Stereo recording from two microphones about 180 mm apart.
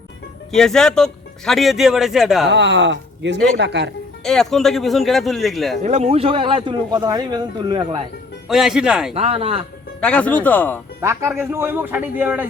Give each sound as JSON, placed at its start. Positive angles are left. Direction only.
{"t": 0.5, "sound": "a man's voice", "side_deg": 5}
{"t": 2.5, "sound": "speech", "side_deg": -75}
{"t": 4.2, "sound": "a man's voice", "side_deg": 5}
{"t": 5.8, "sound": "speech", "side_deg": -40}
{"t": 8.4, "sound": "a man's voice", "side_deg": 0}
{"t": 9.1, "sound": "a man's voice", "side_deg": -35}
{"t": 10.0, "sound": "speech", "side_deg": 5}
{"t": 11.0, "sound": "a man's voice", "side_deg": -15}